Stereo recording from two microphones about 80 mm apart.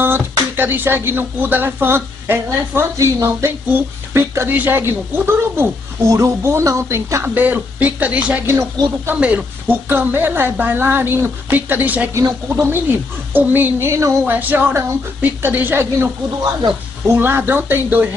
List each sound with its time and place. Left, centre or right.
0.0 s a woman's voice: right
7.3 s a woman's voice: right
8.5 s speech: right
9.1 s a woman's voice: centre
12.1 s a woman's voice: right
13.3 s a woman's voice: right
14.2 s a woman's voice: right
17.1 s a woman's voice: right